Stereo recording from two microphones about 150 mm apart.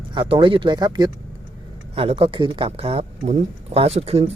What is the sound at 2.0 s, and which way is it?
Speech, 40° right (ahead or behind).